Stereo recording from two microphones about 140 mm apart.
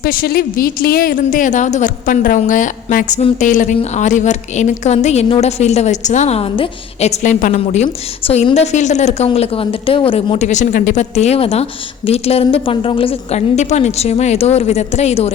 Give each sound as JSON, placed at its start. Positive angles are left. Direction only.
{"t": 0.0, "sound": "a woman's voice", "side_deg": 90}
{"t": 8.2, "sound": "a woman's voice", "side_deg": 40}
{"t": 8.5, "sound": "a woman's voice", "side_deg": 55}
{"t": 13.6, "sound": "speech", "side_deg": 55}